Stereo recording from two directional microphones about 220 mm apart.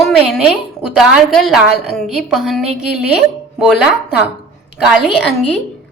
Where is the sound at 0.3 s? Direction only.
5° right (ahead or behind).